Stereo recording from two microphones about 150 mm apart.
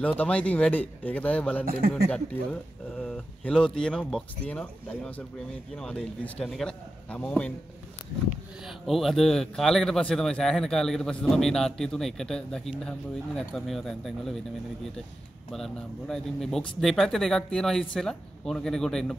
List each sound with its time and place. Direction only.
0.0 s a man's voice: 10° left (ahead or behind)
1.7 s speech: 90° right
3.0 s a man's voice: 5° left (ahead or behind)
15.5 s speech: centre (ahead or behind)